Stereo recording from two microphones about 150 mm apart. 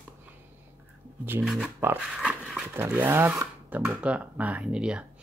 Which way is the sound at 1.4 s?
Centre (ahead or behind).